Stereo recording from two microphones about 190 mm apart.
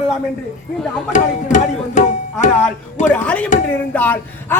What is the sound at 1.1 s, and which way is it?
Tabla, 40° left (ahead or behind).